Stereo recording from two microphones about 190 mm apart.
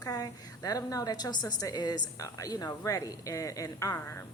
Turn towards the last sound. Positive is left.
turn(degrees=15)  # may be behind; listen again after turning